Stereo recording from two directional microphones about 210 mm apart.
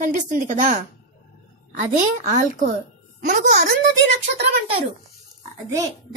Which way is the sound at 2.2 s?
40° right (ahead or behind).